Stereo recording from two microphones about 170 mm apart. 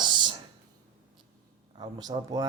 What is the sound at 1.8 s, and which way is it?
Speech, 25° right (ahead or behind).